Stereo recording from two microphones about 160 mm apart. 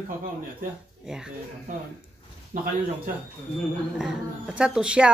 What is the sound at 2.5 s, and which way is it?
Speech, 50° right (ahead or behind).